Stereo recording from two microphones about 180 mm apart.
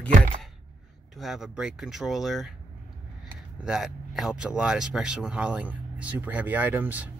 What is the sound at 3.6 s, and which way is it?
Speech, centre (ahead or behind).